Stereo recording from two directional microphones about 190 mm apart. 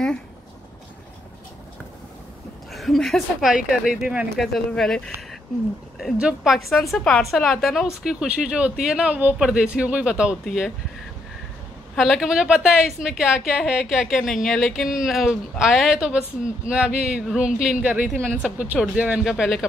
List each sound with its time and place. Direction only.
2.7 s a woman's voice: centre (ahead or behind)
11.9 s a woman's voice: centre (ahead or behind)